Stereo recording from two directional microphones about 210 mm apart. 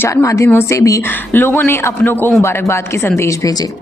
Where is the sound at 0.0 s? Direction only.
15° left (ahead or behind).